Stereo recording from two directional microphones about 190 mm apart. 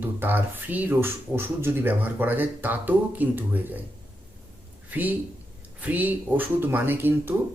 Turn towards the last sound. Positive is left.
turn(degrees=-10)  # may be behind; listen again after turning